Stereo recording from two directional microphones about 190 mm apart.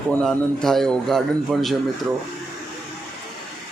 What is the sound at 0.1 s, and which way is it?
A man's voice, 5° left (ahead or behind).